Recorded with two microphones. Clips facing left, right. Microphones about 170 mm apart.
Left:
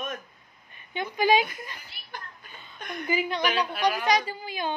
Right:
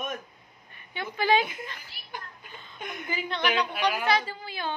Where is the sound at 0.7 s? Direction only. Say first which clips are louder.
Left 3 dB; 15° left (ahead or behind).